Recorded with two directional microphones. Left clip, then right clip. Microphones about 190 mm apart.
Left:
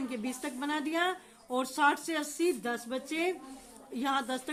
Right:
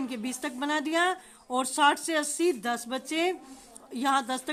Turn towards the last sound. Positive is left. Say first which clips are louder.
# right 5 dB
turn(degrees=-25)  # may be behind; listen again after turning